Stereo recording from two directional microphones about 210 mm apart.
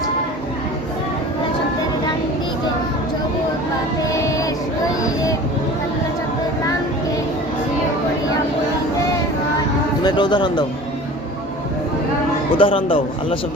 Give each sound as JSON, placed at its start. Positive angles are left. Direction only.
{"t": 4.1, "sound": "child singing", "side_deg": 15}
{"t": 10.0, "sound": "speech", "side_deg": 20}
{"t": 12.5, "sound": "speech", "side_deg": 25}